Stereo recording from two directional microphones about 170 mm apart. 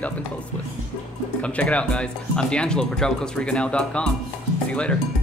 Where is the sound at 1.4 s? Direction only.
5° left (ahead or behind).